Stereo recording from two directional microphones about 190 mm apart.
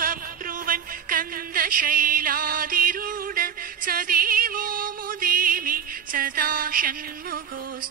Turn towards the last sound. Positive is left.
turn(degrees=-50)  # may be behind; listen again after turning